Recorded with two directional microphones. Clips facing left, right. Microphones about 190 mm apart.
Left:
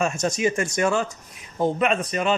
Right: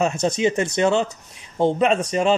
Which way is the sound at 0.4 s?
25° right (ahead or behind).